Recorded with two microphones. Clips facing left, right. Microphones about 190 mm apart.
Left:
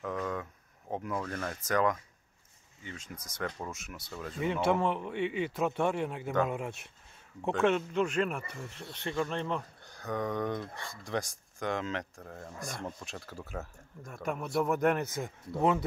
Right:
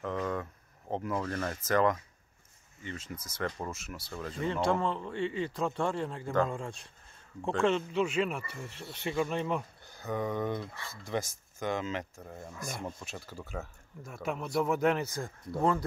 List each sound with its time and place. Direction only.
0.0 s speech: centre (ahead or behind)
15.0 s speech: 20° left (ahead or behind)
15.5 s speech: 5° left (ahead or behind)